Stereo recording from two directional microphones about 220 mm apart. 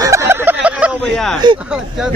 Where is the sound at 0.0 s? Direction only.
15° right (ahead or behind); by 1.4 s centre (ahead or behind).